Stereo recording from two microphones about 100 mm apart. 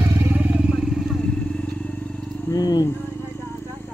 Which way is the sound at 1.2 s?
10° left (ahead or behind).